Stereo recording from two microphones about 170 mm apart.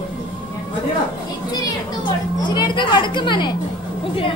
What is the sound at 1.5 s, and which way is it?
Speech, 25° left (ahead or behind).